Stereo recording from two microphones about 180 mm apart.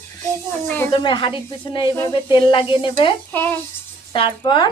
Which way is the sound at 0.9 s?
30° left (ahead or behind).